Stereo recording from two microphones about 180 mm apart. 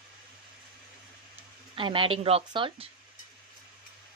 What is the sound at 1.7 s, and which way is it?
A woman's voice, 30° right (ahead or behind).